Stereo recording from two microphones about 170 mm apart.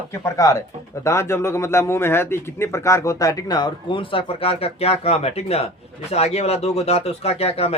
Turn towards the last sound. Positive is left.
turn(degrees=35)  # may be behind; listen again after turning